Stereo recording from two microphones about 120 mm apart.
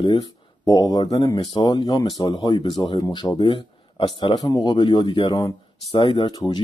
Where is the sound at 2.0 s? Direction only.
30° left (ahead or behind); by 4.0 s 50° left (ahead or behind).